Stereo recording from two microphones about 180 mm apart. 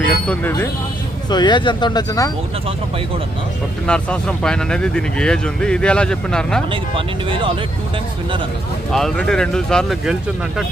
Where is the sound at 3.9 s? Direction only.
5° left (ahead or behind).